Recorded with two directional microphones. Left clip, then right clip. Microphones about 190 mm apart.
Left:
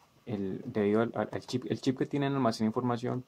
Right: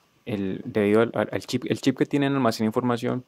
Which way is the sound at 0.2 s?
35° right (ahead or behind).